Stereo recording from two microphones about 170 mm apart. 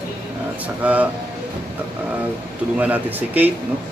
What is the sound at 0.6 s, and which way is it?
Speech, 10° right (ahead or behind).